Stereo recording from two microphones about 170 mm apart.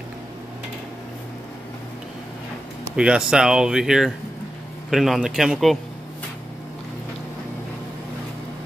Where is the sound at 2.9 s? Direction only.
5° right (ahead or behind).